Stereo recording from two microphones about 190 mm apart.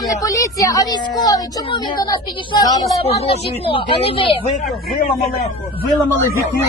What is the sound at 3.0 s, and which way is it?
A woman's voice, 30° left (ahead or behind).